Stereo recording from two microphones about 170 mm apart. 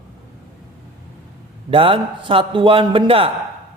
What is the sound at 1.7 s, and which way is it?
A man's voice, 30° right (ahead or behind).